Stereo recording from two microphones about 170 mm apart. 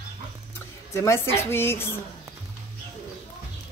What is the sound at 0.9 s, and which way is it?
A woman's voice, 15° left (ahead or behind).